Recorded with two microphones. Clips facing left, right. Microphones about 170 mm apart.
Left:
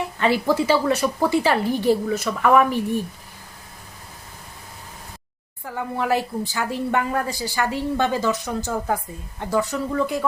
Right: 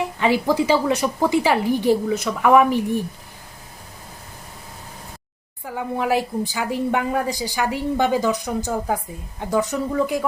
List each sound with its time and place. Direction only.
0.2 s a woman's voice: 15° right (ahead or behind)
5.6 s a woman's voice: 15° right (ahead or behind)